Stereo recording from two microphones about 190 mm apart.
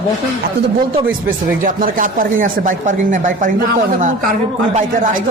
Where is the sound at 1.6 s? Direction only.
45° right (ahead or behind).